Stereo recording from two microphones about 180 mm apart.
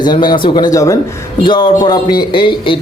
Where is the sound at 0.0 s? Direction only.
25° left (ahead or behind).